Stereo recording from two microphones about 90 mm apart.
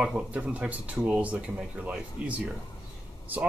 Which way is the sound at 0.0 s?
10° right (ahead or behind).